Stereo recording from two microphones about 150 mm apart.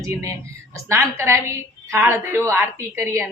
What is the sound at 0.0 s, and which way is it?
A woman's voice, 20° right (ahead or behind).